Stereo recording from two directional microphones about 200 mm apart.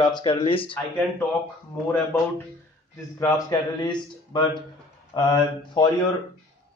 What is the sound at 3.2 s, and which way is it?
Speech, 15° left (ahead or behind).